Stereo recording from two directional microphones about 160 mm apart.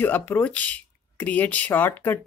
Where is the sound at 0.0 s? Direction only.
10° left (ahead or behind).